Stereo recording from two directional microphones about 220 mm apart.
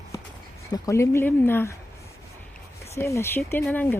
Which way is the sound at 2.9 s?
15° left (ahead or behind).